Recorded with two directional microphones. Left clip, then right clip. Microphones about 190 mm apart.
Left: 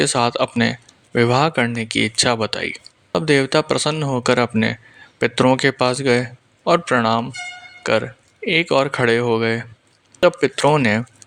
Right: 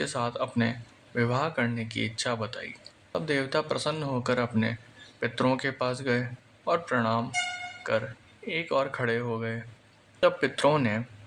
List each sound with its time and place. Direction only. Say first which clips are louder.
0.0 s speech: left 12 dB; 40° left (ahead or behind)
10.2 s speech: left 8 dB; 35° left (ahead or behind)